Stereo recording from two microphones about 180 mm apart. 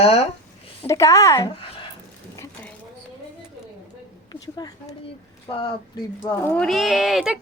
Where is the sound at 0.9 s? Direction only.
15° left (ahead or behind).